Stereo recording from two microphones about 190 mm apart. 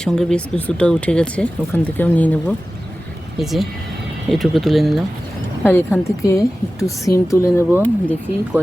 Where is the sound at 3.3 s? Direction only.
Centre (ahead or behind).